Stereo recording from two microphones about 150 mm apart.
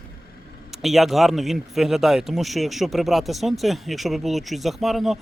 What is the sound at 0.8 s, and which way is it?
Speech, centre (ahead or behind).